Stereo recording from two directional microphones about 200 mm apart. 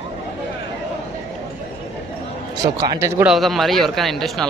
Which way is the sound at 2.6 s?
20° right (ahead or behind).